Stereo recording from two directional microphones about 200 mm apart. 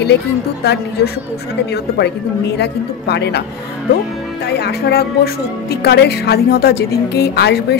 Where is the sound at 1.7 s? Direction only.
55° left (ahead or behind).